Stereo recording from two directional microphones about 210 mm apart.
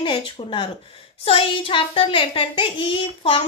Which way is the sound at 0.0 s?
25° left (ahead or behind).